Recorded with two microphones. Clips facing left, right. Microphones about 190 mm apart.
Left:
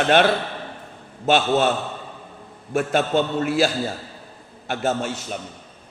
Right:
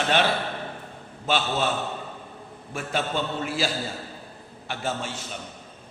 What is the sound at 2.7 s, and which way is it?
A man's voice, 55° left (ahead or behind).